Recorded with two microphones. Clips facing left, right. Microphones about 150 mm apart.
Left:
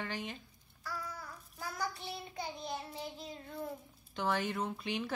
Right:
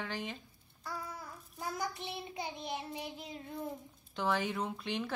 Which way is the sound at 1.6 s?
20° right (ahead or behind).